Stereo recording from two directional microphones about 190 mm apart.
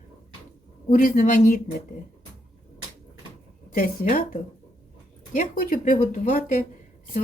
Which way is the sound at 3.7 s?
45° left (ahead or behind).